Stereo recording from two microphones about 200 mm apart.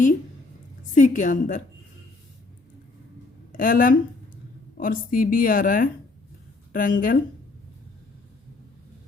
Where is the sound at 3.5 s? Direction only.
45° left (ahead or behind).